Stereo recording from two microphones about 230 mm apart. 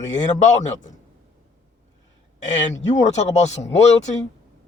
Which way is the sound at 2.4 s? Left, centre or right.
Left.